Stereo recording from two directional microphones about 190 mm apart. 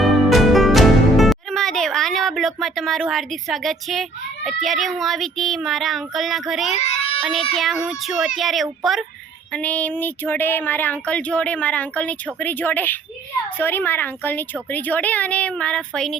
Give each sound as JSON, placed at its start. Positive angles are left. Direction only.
{"t": 0.0, "sound": "music", "side_deg": 0}
{"t": 4.4, "sound": "speech", "side_deg": 0}
{"t": 6.7, "sound": "child singing", "side_deg": 35}
{"t": 7.5, "sound": "speech", "side_deg": 0}